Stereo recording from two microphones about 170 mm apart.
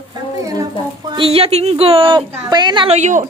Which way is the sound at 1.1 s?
35° right (ahead or behind).